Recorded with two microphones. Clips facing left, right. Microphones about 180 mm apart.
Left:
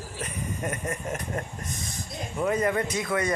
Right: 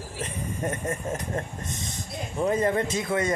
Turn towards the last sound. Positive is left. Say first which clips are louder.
# right 1 dB
turn(degrees=-25)  # may be behind; listen again after turning